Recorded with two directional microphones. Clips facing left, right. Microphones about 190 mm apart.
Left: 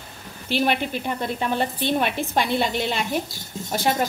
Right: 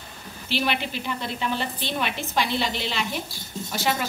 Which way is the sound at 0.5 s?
50° left (ahead or behind).